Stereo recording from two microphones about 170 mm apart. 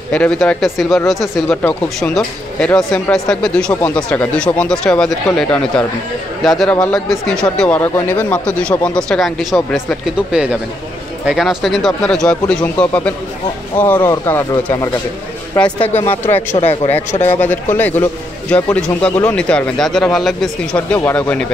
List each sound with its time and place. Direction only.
0.1 s a man's voice: 5° left (ahead or behind)
16.5 s speech: 35° left (ahead or behind)
17.3 s a man's voice: 10° left (ahead or behind)